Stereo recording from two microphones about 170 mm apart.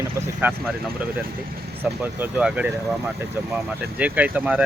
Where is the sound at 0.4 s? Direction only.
10° right (ahead or behind).